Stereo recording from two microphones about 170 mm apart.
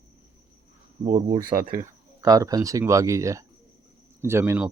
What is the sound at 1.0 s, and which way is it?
Speech, 25° right (ahead or behind).